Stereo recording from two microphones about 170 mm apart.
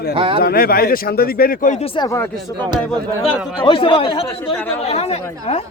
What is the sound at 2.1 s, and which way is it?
Speech, 15° left (ahead or behind).